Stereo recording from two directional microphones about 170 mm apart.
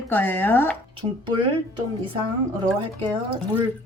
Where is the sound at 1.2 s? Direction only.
30° right (ahead or behind).